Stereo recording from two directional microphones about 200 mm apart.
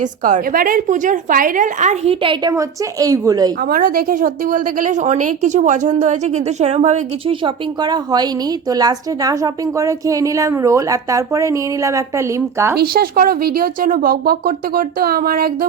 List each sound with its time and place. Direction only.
0.0 s a woman's voice: 40° right (ahead or behind); by 3.5 s 20° right (ahead or behind)
3.6 s a woman's voice: 45° right (ahead or behind); by 12.7 s 15° right (ahead or behind)
12.7 s speech: 50° right (ahead or behind)